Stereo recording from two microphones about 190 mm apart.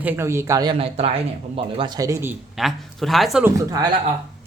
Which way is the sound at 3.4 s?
20° right (ahead or behind).